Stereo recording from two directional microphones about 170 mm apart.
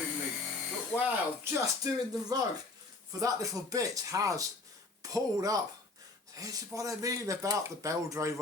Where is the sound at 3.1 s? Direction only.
20° right (ahead or behind).